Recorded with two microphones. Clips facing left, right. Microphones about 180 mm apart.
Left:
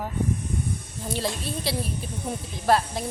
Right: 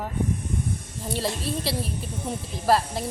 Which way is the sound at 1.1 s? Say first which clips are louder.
Right 1 dB; centre (ahead or behind).